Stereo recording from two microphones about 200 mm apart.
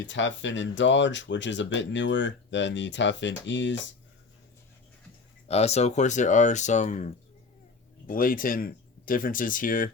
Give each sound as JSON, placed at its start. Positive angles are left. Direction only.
{"t": 0.0, "sound": "speech", "side_deg": 65}
{"t": 5.5, "sound": "speech", "side_deg": 30}